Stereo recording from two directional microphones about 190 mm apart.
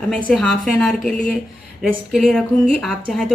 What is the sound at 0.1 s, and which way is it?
Speech, 5° left (ahead or behind).